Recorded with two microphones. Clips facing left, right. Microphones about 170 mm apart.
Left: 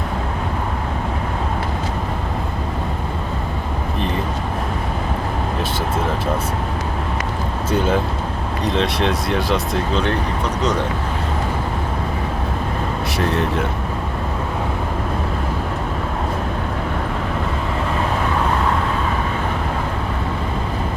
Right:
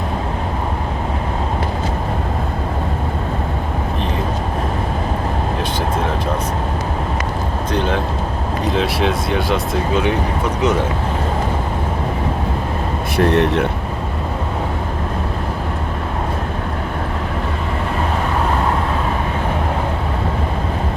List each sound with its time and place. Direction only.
7.7 s vehicle: 5° left (ahead or behind)
8.6 s speech: 5° right (ahead or behind)
13.1 s speech: 65° right (ahead or behind)